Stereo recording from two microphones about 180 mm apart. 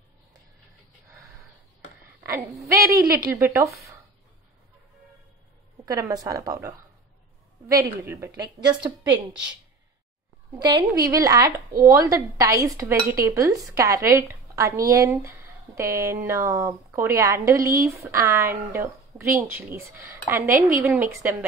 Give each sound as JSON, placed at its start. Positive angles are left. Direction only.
{"t": 2.7, "sound": "speech", "side_deg": -20}
{"t": 5.9, "sound": "a woman's voice", "side_deg": -20}
{"t": 8.4, "sound": "a woman's voice", "side_deg": -25}
{"t": 9.1, "sound": "a woman's voice", "side_deg": -5}
{"t": 10.6, "sound": "a woman's voice", "side_deg": -20}